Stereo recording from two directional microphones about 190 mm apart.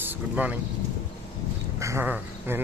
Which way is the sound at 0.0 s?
10° right (ahead or behind).